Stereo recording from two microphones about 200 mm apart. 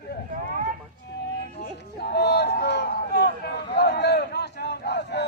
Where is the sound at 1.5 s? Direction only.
55° left (ahead or behind).